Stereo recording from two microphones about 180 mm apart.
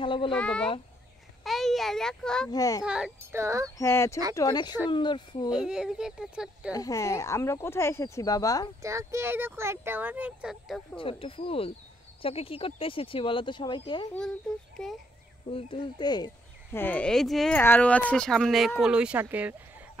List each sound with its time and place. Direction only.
0.0 s a child's voice: 30° left (ahead or behind)
0.3 s a child's voice: 5° left (ahead or behind)
2.5 s speech: 20° left (ahead or behind)
2.8 s speech: 5° right (ahead or behind)
3.7 s speech: 15° left (ahead or behind)
5.5 s speech: 5° right (ahead or behind)
6.7 s speech: 20° left (ahead or behind)
8.8 s speech: 15° right (ahead or behind); by 11.0 s centre (ahead or behind)
11.0 s speech: 30° left (ahead or behind)
15.5 s speech: 25° left (ahead or behind)
16.7 s speech: 10° left (ahead or behind); by 19.5 s 10° right (ahead or behind)